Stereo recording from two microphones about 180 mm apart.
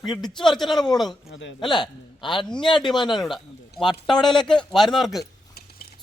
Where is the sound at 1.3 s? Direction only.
90° left.